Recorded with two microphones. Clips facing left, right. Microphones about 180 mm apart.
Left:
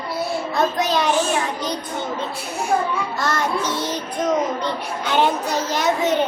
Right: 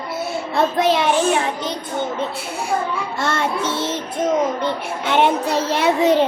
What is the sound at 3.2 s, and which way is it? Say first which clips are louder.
A child's voice: right 2 dB; 25° right (ahead or behind).